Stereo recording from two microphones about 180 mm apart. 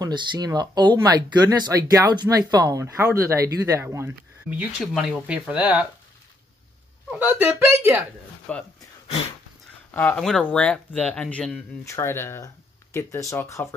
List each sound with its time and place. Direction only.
0.0 s speech: 25° right (ahead or behind); by 5.9 s 10° right (ahead or behind)
7.1 s speech: 10° right (ahead or behind)
8.5 s speech: 5° left (ahead or behind)
9.8 s speech: 10° left (ahead or behind)